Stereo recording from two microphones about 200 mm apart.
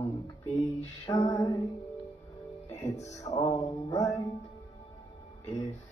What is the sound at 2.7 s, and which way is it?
Music, 15° left (ahead or behind).